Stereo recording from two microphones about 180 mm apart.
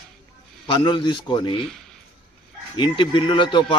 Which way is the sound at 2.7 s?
25° left (ahead or behind).